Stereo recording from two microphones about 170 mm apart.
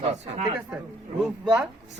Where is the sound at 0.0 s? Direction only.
40° right (ahead or behind).